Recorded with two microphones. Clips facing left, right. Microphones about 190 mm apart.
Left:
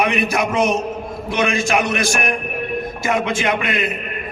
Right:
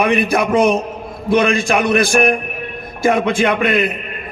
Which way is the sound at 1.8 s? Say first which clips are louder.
Right 6 dB; 55° right (ahead or behind).